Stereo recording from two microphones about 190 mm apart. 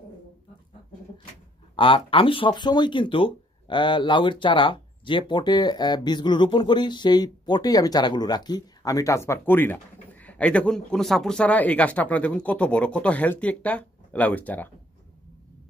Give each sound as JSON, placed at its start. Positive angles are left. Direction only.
{"t": 1.8, "sound": "speech", "side_deg": 30}